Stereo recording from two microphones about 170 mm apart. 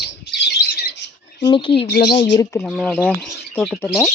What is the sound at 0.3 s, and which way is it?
Bird, 85° left.